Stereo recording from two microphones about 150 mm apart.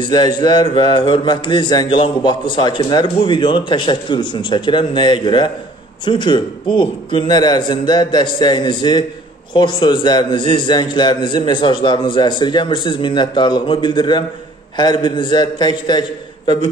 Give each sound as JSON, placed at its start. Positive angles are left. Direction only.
{"t": 0.0, "sound": "a man's voice", "side_deg": 30}